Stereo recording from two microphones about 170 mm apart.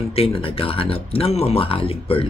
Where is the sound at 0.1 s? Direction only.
35° left (ahead or behind).